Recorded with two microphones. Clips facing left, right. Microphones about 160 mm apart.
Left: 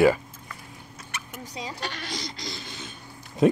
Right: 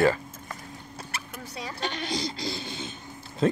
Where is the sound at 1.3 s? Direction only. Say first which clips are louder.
Left 2 dB; 15° left (ahead or behind).